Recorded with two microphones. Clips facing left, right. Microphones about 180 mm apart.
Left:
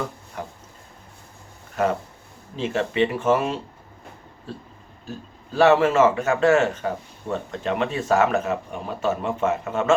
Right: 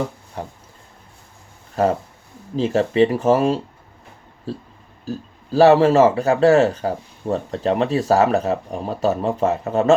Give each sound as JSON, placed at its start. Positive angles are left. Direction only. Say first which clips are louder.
{"t": 0.4, "sound": "speech", "louder": "right 3 dB", "side_deg": -30}
{"t": 1.8, "sound": "speech", "louder": "right 4 dB", "side_deg": -35}